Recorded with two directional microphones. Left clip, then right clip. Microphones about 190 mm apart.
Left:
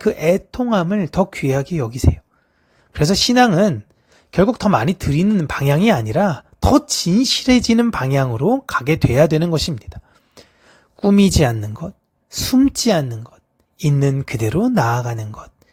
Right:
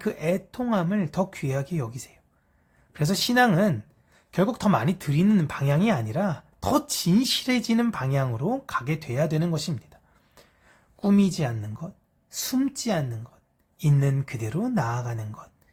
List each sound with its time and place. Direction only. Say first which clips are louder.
0.0 s speech: left 11 dB; 40° left (ahead or behind)
11.3 s speech: left 13 dB; 50° left (ahead or behind)